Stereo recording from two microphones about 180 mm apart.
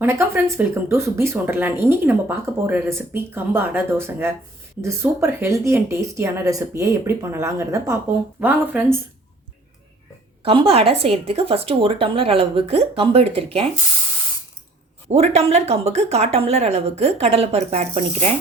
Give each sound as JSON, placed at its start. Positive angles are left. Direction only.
{"t": 0.0, "sound": "speech", "side_deg": -15}
{"t": 10.4, "sound": "speech", "side_deg": -30}
{"t": 15.1, "sound": "speech", "side_deg": -35}